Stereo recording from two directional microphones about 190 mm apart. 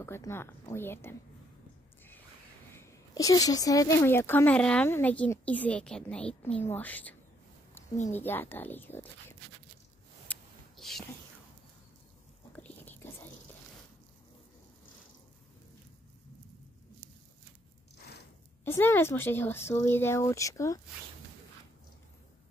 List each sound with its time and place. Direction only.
0.0 s speech: 15° left (ahead or behind)
2.7 s speech: 15° left (ahead or behind)
10.2 s a sound: 5° left (ahead or behind)
12.5 s whispering: 10° left (ahead or behind)
17.9 s a sound: 60° left (ahead or behind)
18.6 s speech: 10° left (ahead or behind)